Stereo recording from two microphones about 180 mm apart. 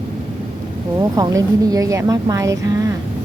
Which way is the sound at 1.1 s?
20° right (ahead or behind).